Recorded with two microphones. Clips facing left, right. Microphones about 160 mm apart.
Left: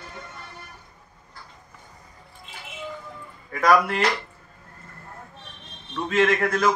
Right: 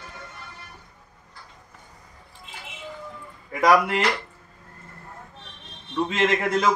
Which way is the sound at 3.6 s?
15° right (ahead or behind).